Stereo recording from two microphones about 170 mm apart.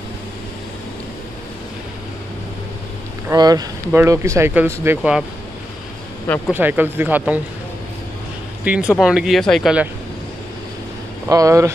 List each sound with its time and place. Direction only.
3.3 s speech: 20° right (ahead or behind)
6.2 s speech: 10° left (ahead or behind)
6.5 s speech: 10° right (ahead or behind)
8.6 s speech: 5° right (ahead or behind)
11.2 s speech: 20° right (ahead or behind)